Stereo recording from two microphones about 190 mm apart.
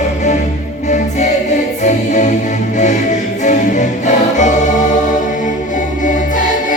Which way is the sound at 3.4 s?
40° left (ahead or behind).